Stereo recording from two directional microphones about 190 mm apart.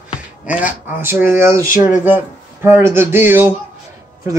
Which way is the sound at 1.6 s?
45° left (ahead or behind).